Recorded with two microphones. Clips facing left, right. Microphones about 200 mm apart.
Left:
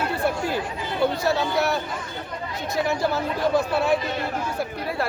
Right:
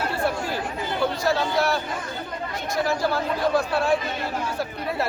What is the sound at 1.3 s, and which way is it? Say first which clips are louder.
Speech: even; 20° left (ahead or behind).